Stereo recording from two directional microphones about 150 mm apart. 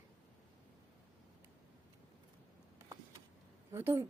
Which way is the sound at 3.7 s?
15° right (ahead or behind).